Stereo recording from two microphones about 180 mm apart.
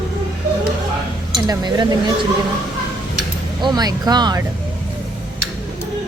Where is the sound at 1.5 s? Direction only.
20° right (ahead or behind).